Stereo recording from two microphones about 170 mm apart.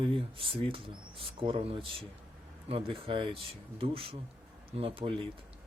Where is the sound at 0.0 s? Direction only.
30° right (ahead or behind).